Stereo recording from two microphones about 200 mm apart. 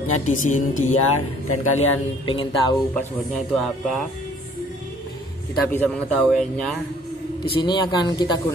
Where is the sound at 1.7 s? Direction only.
25° left (ahead or behind).